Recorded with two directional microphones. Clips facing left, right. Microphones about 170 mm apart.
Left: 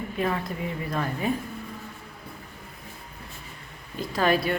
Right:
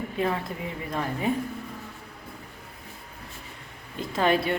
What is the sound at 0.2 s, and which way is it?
A woman's voice, 25° right (ahead or behind).